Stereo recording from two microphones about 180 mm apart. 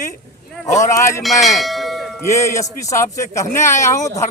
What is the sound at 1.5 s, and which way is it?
Bell, centre (ahead or behind).